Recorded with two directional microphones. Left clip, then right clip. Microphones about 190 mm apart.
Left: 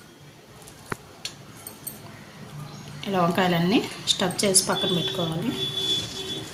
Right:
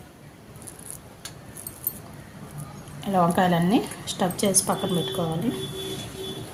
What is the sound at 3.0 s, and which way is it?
A woman's voice, 30° right (ahead or behind).